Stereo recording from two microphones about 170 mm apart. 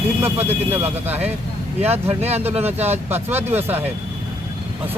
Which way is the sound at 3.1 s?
10° right (ahead or behind).